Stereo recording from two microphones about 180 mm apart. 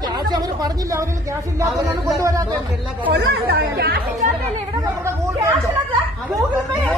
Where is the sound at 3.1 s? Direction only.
65° right (ahead or behind).